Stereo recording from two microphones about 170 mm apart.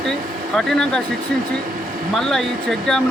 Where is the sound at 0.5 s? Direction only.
5° left (ahead or behind).